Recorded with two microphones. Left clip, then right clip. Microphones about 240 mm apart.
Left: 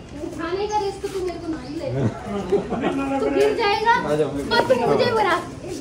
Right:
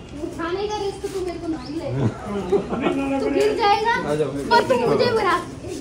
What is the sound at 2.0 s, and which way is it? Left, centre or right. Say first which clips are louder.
Speech: even; centre.